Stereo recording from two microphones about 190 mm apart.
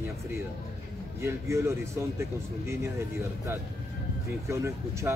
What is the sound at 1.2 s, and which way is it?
Speech, 15° right (ahead or behind).